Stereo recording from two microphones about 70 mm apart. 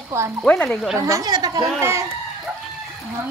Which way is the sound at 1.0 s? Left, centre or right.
Right.